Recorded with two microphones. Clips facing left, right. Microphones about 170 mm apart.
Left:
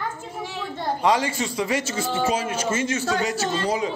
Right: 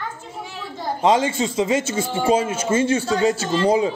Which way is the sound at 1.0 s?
25° right (ahead or behind).